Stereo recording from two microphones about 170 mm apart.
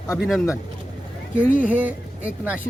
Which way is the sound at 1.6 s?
10° right (ahead or behind).